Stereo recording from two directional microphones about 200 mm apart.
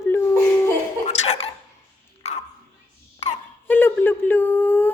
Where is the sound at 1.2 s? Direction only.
35° left (ahead or behind).